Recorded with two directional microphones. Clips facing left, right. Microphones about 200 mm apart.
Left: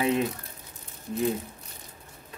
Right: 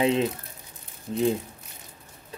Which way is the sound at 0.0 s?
25° right (ahead or behind).